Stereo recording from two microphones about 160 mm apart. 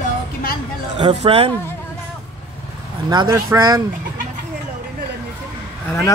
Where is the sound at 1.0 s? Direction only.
40° right (ahead or behind).